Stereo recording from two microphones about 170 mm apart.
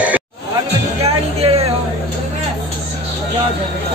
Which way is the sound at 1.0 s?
35° right (ahead or behind).